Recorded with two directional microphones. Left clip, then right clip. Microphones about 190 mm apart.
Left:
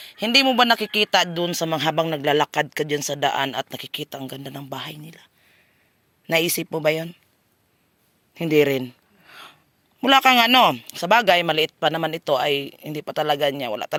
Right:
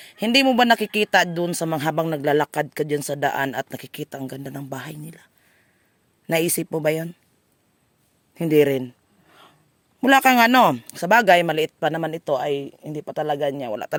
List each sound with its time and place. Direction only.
0.0 s speech: 40° right (ahead or behind)
8.3 s speech: 30° right (ahead or behind)
8.8 s a sound: 10° right (ahead or behind)
10.0 s speech: 35° right (ahead or behind)